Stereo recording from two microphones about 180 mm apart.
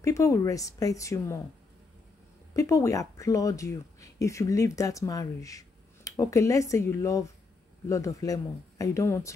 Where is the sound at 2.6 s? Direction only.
15° left (ahead or behind).